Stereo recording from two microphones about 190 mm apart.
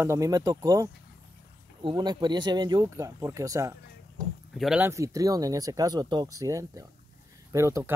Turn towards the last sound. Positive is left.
turn(degrees=-15)  # may be behind; listen again after turning